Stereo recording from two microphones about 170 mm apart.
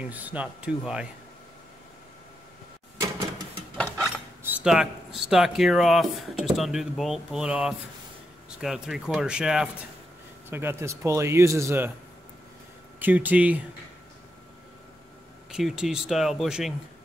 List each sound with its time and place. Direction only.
0.1 s speech: 10° right (ahead or behind)
3.7 s dishes: 5° right (ahead or behind)
4.4 s speech: 10° right (ahead or behind)
13.0 s speech: 10° right (ahead or behind)
15.5 s speech: 5° right (ahead or behind)